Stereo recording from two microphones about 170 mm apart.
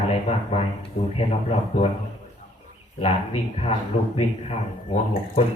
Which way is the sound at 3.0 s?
35° left (ahead or behind).